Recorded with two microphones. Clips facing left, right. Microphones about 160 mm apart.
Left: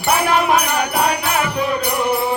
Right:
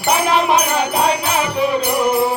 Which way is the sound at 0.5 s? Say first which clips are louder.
Right 1 dB; 20° right (ahead or behind).